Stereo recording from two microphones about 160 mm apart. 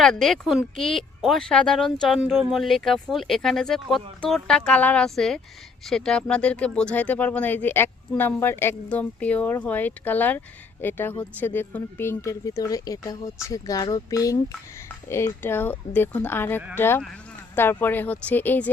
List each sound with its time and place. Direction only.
0.0 s speech: centre (ahead or behind)